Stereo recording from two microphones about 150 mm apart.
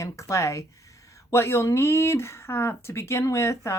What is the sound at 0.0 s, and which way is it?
Speech, 20° left (ahead or behind).